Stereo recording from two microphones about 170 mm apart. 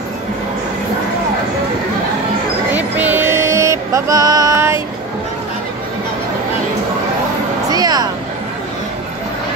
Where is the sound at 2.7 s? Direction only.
10° right (ahead or behind).